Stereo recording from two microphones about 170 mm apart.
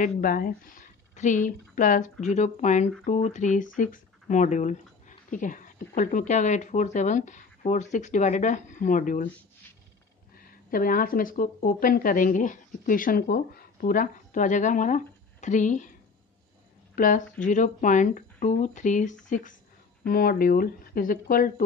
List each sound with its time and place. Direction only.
0.0 s speech: 55° left (ahead or behind)
10.3 s speech: 55° left (ahead or behind)
16.9 s a woman's voice: 55° left (ahead or behind)